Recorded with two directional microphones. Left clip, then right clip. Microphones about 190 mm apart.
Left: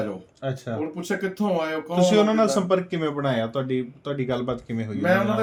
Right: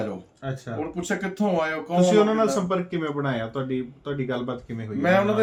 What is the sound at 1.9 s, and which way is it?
Speech, 50° left (ahead or behind).